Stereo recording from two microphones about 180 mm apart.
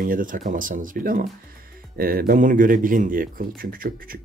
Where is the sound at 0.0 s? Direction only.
50° right (ahead or behind).